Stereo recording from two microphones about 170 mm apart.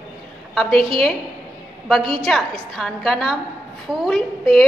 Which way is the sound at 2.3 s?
Centre (ahead or behind).